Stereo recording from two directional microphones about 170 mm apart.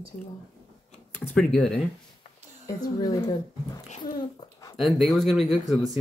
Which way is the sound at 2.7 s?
20° left (ahead or behind).